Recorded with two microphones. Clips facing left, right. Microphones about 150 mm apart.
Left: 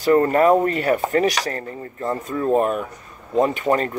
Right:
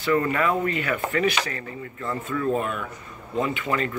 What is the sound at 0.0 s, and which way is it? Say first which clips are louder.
Speech: left 7 dB; 40° left (ahead or behind).